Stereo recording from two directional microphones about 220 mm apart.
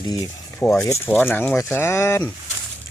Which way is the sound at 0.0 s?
15° left (ahead or behind).